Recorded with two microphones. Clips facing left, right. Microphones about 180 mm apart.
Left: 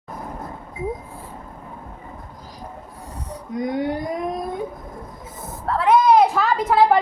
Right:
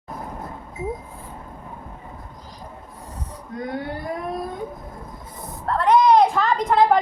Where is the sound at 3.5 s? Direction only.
15° left (ahead or behind).